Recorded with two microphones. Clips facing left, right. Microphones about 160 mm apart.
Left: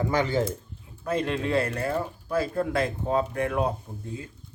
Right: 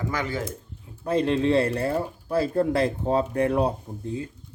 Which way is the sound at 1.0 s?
30° right (ahead or behind).